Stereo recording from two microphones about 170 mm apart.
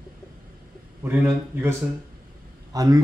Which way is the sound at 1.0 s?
10° right (ahead or behind).